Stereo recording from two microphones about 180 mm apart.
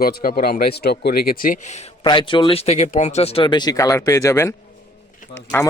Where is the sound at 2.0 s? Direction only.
25° left (ahead or behind).